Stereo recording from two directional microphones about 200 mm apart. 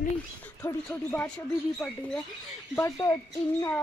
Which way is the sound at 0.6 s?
10° left (ahead or behind).